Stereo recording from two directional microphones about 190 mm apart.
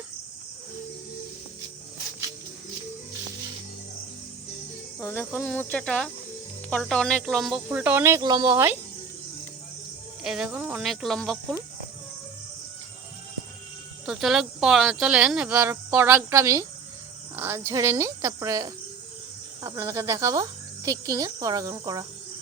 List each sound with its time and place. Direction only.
4.9 s speech: 15° left (ahead or behind); by 8.8 s 15° right (ahead or behind)
10.2 s speech: centre (ahead or behind)
14.0 s speech: centre (ahead or behind); by 22.0 s 20° right (ahead or behind)